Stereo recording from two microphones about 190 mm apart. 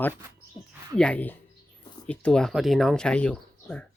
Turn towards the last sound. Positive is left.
turn(degrees=5)  # may be behind; listen again after turning